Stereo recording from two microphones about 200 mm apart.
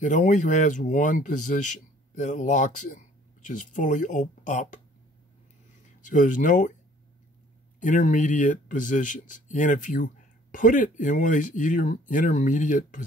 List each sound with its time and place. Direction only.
0.0 s speech: 40° left (ahead or behind)
6.0 s speech: 40° left (ahead or behind)
7.8 s speech: 40° left (ahead or behind)